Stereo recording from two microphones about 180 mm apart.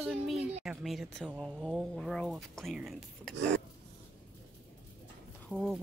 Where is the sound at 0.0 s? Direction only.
Centre (ahead or behind).